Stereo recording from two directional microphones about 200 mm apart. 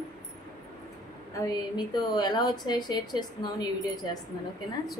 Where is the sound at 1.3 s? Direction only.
20° left (ahead or behind).